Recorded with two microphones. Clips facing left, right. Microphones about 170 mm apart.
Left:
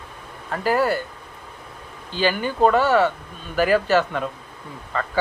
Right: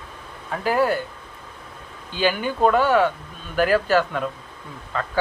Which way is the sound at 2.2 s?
10° right (ahead or behind).